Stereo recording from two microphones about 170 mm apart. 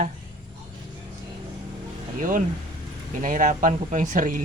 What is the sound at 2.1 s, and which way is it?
Speech, 50° right (ahead or behind).